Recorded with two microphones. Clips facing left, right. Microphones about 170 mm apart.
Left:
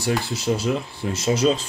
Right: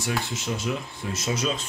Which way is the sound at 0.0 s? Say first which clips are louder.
Left 6 dB; 35° left (ahead or behind).